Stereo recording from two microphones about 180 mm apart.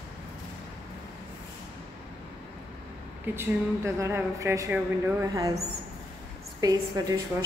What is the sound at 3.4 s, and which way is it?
A woman's voice, 15° right (ahead or behind).